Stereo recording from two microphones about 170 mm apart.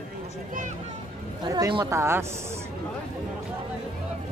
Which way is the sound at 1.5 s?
25° right (ahead or behind).